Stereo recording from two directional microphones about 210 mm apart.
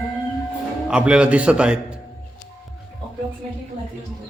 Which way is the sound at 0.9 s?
5° right (ahead or behind).